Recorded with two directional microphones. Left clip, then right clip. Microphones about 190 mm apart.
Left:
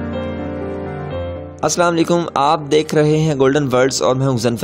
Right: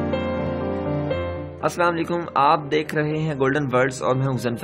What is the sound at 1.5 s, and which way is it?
Speech, 45° left (ahead or behind).